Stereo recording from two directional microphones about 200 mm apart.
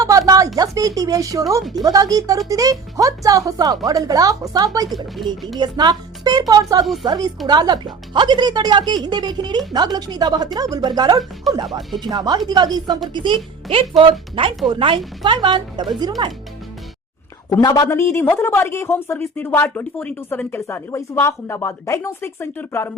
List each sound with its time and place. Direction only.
0.0 s speech: 15° right (ahead or behind)
5.1 s speech: centre (ahead or behind)
5.5 s a woman's voice: 20° right (ahead or behind)
17.5 s a man's voice: 20° left (ahead or behind)